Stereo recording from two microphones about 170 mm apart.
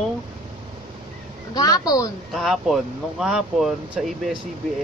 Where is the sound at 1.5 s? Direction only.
20° left (ahead or behind).